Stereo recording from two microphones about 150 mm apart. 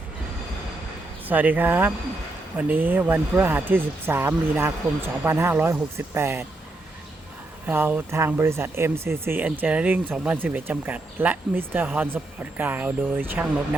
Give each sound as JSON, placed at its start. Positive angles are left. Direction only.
{"t": 1.3, "sound": "speech", "side_deg": -10}
{"t": 7.7, "sound": "speech", "side_deg": -10}